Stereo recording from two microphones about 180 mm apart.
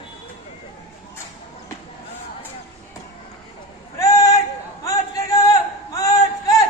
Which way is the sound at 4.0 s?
20° left (ahead or behind).